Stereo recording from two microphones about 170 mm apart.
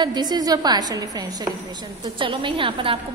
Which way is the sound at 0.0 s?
25° right (ahead or behind).